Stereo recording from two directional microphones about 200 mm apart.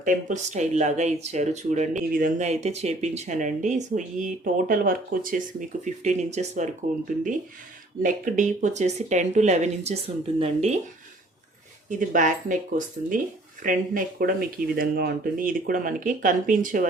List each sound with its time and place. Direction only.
0.0 s speech: 40° right (ahead or behind)
8.0 s speech: 40° right (ahead or behind)
11.9 s speech: 40° right (ahead or behind)